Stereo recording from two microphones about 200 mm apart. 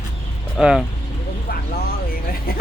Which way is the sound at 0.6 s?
5° right (ahead or behind).